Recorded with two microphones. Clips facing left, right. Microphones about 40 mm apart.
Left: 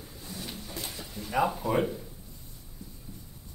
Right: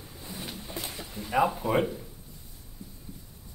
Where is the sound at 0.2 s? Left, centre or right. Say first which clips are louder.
Right 1 dB; centre.